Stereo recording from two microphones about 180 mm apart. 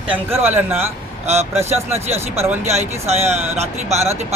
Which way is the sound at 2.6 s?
35° right (ahead or behind).